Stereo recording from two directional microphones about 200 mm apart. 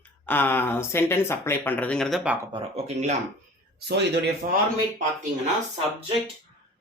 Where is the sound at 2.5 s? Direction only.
35° right (ahead or behind).